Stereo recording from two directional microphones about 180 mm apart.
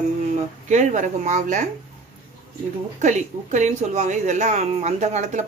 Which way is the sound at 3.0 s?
40° right (ahead or behind).